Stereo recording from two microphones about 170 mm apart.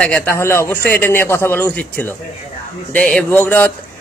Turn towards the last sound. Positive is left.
turn(degrees=10)  # may be behind; listen again after turning